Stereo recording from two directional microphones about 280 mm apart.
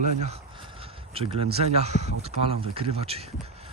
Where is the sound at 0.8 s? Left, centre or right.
Centre.